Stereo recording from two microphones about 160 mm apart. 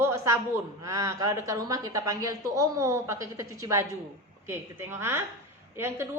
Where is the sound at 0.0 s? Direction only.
15° right (ahead or behind).